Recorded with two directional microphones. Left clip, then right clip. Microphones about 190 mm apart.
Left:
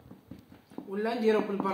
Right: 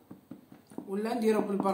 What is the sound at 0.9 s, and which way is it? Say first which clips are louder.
Speech: left 1 dB; 40° right (ahead or behind).